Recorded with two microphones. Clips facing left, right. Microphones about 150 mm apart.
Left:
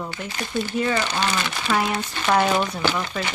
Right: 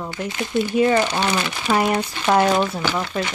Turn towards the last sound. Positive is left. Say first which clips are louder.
# right 1 dB
turn(degrees=-5)  # may be behind; listen again after turning